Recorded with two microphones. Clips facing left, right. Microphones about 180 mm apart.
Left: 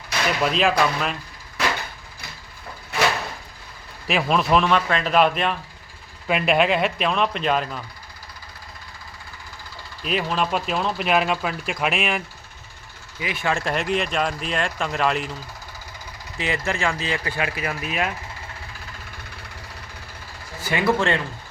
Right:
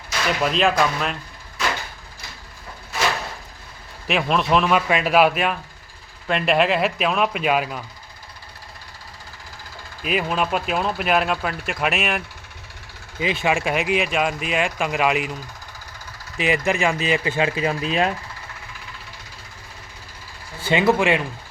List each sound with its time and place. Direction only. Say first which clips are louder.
0.4 s speech: right 1 dB; centre (ahead or behind)
4.0 s speech: even; centre (ahead or behind)
10.0 s speech: right 1 dB; 5° right (ahead or behind)
13.1 s speech: right 5 dB; 25° right (ahead or behind)
13.5 s speech: even; 10° right (ahead or behind)
16.4 s speech: right 4 dB; 15° right (ahead or behind)
20.6 s speech: right 3 dB; 25° right (ahead or behind)